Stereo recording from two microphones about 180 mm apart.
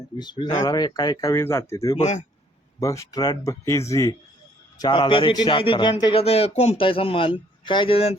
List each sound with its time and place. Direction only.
0.2 s a man's voice: 25° left (ahead or behind)
2.0 s speech: 40° left (ahead or behind)
2.8 s speech: 15° left (ahead or behind)
4.8 s a man's voice: 25° left (ahead or behind)